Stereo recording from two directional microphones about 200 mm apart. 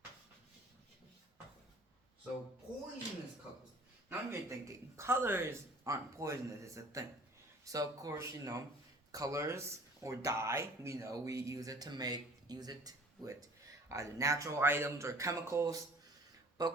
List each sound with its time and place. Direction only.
4.1 s speech: 15° right (ahead or behind)